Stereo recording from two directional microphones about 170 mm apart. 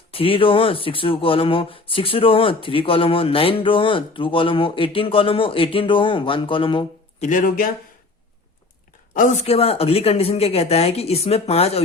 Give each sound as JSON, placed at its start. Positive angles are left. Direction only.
{"t": 0.1, "sound": "speech", "side_deg": 35}
{"t": 7.3, "sound": "speech", "side_deg": 55}
{"t": 9.1, "sound": "speech", "side_deg": 45}